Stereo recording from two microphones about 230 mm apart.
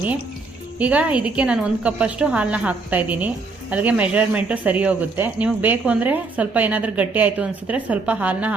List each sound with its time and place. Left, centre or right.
0.8 s a woman's voice: centre